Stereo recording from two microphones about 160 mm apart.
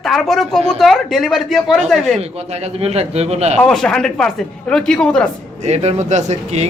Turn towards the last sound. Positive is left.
turn(degrees=-45)  # may be behind; listen again after turning